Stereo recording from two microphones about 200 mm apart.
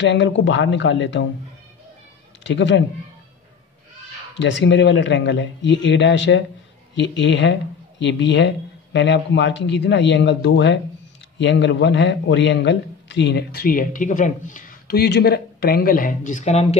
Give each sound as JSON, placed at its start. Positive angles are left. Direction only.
{"t": 0.0, "sound": "speech", "side_deg": 65}
{"t": 2.4, "sound": "speech", "side_deg": 65}
{"t": 4.4, "sound": "a man's voice", "side_deg": 65}